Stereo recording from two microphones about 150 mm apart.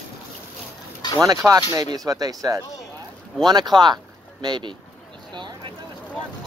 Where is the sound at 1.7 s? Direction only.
25° right (ahead or behind).